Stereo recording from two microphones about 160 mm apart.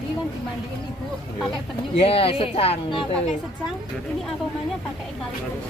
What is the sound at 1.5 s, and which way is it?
Speech, 35° left (ahead or behind).